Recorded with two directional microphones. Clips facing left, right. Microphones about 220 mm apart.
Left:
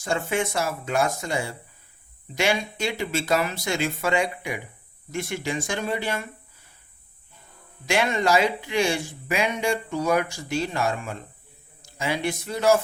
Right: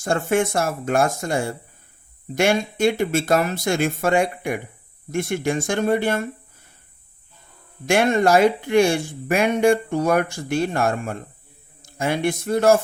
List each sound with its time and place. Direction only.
0.0 s speech: 50° right (ahead or behind)
7.9 s a man's voice: 50° right (ahead or behind)